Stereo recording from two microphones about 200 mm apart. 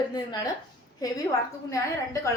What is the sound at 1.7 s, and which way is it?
Speech, 15° left (ahead or behind).